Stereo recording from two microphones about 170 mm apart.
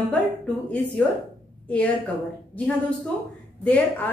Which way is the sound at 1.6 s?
10° left (ahead or behind).